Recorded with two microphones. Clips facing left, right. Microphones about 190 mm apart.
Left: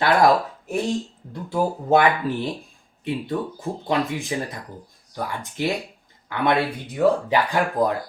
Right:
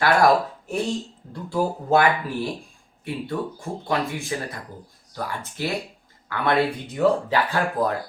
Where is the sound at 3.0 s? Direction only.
20° left (ahead or behind).